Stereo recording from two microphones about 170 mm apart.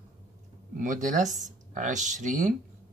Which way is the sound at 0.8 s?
50° right (ahead or behind).